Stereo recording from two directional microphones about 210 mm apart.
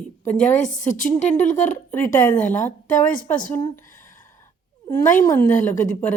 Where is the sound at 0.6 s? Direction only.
40° left (ahead or behind).